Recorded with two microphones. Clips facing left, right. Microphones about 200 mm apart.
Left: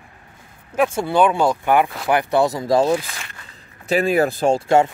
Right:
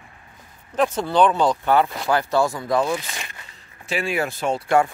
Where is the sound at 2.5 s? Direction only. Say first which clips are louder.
Left 5 dB; 35° left (ahead or behind).